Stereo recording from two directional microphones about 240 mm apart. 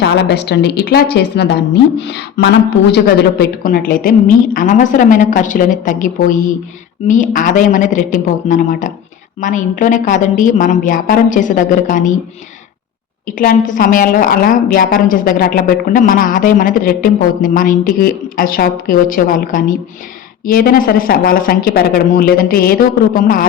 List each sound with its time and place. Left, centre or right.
0.2 s a woman's voice: left
13.4 s a woman's voice: left